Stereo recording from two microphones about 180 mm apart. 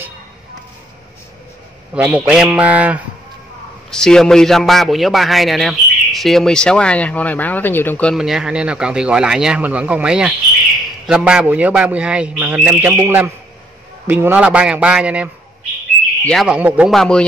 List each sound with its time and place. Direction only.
2.0 s speech: 5° right (ahead or behind)
3.9 s a man's voice: 5° left (ahead or behind)
16.3 s a man's voice: centre (ahead or behind)